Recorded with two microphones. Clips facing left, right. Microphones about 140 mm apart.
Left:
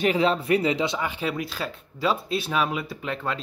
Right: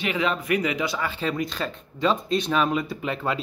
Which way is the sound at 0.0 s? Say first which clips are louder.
Left 4 dB; 35° left (ahead or behind).